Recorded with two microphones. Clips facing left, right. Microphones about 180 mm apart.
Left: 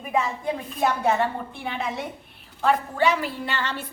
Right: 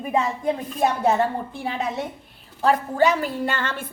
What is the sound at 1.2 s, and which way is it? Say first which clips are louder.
A woman's voice: right 3 dB; 35° right (ahead or behind).